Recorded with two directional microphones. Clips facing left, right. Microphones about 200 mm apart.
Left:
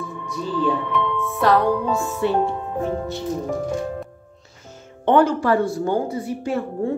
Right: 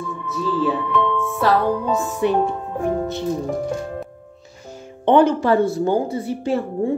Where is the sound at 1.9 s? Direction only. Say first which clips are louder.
Right 2 dB; 20° right (ahead or behind).